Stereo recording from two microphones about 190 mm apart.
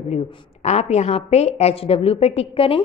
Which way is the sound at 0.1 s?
30° left (ahead or behind).